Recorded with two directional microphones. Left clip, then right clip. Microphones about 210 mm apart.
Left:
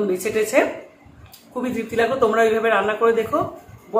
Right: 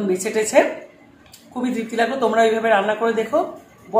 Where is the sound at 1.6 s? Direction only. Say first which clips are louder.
Even; centre (ahead or behind).